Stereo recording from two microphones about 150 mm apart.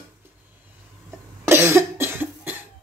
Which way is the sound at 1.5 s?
15° right (ahead or behind).